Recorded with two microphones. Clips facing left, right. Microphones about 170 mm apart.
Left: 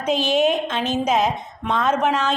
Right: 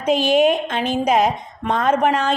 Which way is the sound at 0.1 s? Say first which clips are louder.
Right 3 dB; 50° right (ahead or behind).